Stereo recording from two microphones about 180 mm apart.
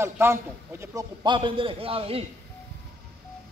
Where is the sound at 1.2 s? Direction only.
25° right (ahead or behind).